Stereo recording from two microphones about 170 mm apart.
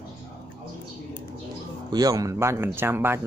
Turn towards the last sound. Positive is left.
turn(degrees=-15)  # may be behind; listen again after turning